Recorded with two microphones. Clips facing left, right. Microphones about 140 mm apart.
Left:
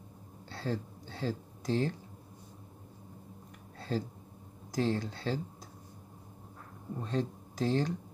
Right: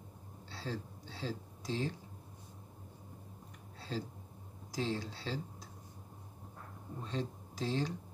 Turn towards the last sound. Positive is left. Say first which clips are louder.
# left 5 dB
turn(degrees=50)  # may be behind; listen again after turning